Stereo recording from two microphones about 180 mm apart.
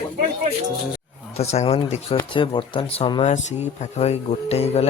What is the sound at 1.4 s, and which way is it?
Speech, 35° left (ahead or behind).